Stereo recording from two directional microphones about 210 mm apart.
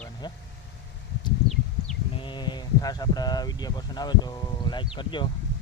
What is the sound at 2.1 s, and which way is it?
Speech, 20° left (ahead or behind).